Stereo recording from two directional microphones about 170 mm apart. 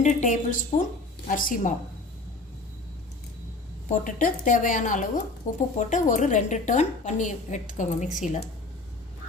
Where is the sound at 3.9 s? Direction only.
50° left (ahead or behind).